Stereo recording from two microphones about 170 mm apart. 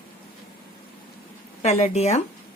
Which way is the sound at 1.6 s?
40° left (ahead or behind).